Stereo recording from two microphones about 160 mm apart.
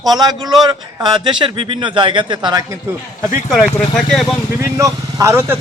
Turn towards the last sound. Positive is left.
turn(degrees=-15)  # may be behind; listen again after turning